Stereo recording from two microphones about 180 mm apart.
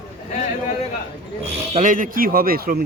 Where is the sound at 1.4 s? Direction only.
50° right (ahead or behind).